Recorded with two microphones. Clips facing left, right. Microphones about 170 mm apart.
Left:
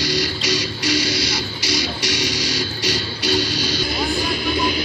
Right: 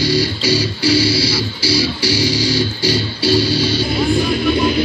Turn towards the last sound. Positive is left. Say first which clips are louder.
# right 6 dB
turn(degrees=-30)  # may be behind; listen again after turning